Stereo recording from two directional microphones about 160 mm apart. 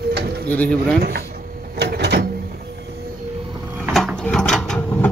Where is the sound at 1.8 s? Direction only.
90° right.